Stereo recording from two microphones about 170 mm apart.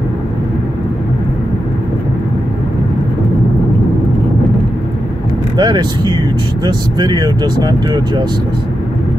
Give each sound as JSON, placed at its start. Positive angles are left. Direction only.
{"t": 5.6, "sound": "speech", "side_deg": -25}